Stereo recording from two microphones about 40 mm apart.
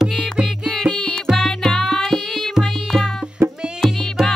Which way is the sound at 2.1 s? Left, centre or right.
Centre.